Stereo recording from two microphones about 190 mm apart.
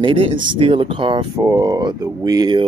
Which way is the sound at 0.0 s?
30° right (ahead or behind).